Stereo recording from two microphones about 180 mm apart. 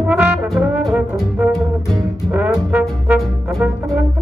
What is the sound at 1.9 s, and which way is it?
Music, 15° right (ahead or behind).